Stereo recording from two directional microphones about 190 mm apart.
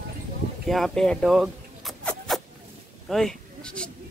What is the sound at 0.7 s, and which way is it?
Zipper, centre (ahead or behind).